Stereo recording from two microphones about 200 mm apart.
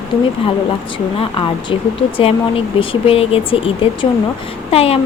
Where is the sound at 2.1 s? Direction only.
25° left (ahead or behind).